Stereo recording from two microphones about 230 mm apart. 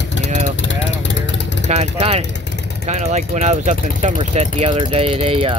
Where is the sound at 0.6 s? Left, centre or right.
Left.